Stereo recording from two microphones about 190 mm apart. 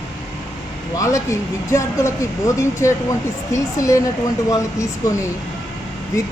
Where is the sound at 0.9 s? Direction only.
15° left (ahead or behind).